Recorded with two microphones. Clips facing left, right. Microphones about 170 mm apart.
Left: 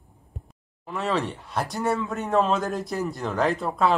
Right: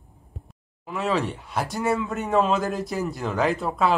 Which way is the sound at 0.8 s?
Centre (ahead or behind).